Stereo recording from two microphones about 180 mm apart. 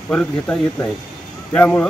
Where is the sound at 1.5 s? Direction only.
10° left (ahead or behind).